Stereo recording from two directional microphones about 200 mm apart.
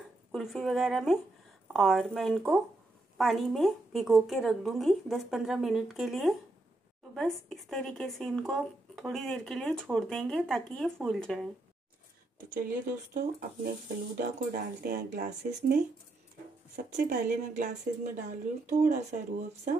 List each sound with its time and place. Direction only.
0.3 s speech: centre (ahead or behind)
13.1 s speech: 45° right (ahead or behind)
18.7 s speech: 35° right (ahead or behind)